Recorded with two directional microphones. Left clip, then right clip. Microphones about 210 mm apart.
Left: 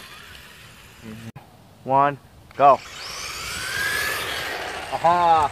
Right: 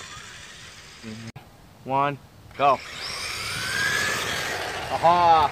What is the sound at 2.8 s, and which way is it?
Vehicle, 10° left (ahead or behind).